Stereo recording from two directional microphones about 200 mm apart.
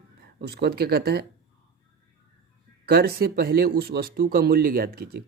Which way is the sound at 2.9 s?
50° right (ahead or behind).